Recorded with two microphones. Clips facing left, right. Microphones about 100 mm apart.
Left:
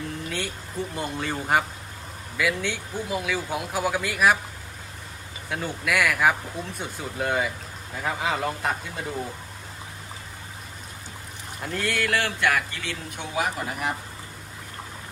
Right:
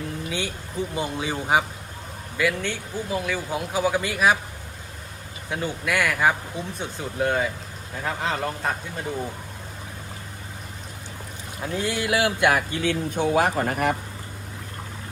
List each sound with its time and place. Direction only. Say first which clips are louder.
0.3 s speech: right 2 dB; centre (ahead or behind)
5.5 s speech: right 1 dB; centre (ahead or behind)
11.6 s speech: right 1 dB; 5° right (ahead or behind)
12.4 s speech: right 3 dB; 30° right (ahead or behind)
12.8 s speech: right 11 dB; 40° right (ahead or behind)
13.6 s speech: right 6 dB; 55° right (ahead or behind)